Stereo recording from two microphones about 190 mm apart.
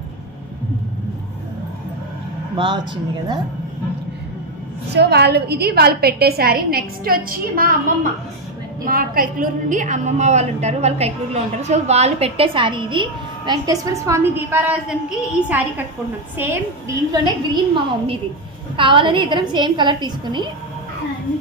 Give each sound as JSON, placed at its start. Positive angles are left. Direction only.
{"t": 2.5, "sound": "a woman's voice", "side_deg": -25}
{"t": 4.9, "sound": "a woman's voice", "side_deg": -60}
{"t": 16.3, "sound": "a woman's voice", "side_deg": -20}